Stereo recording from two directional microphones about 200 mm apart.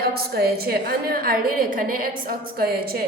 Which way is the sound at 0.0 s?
50° right (ahead or behind).